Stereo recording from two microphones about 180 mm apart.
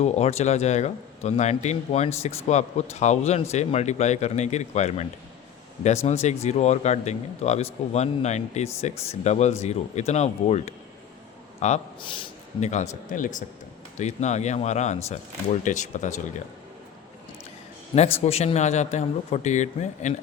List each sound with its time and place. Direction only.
0.0 s speech: 35° left (ahead or behind)
6.1 s speech: 40° left (ahead or behind)
12.0 s speech: 30° left (ahead or behind)
17.9 s speech: 35° left (ahead or behind)